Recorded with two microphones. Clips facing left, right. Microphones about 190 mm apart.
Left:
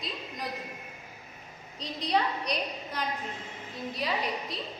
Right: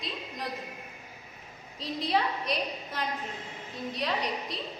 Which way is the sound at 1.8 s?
Centre (ahead or behind).